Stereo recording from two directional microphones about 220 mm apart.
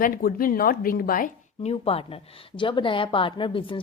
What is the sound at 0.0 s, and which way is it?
Speech, 40° left (ahead or behind).